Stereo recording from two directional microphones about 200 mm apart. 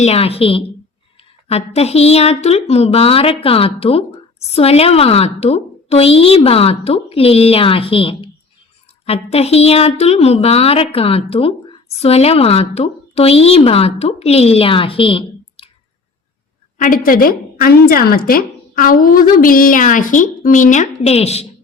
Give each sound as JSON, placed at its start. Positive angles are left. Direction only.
{"t": 0.0, "sound": "a woman's voice", "side_deg": 30}
{"t": 16.7, "sound": "a woman's voice", "side_deg": 40}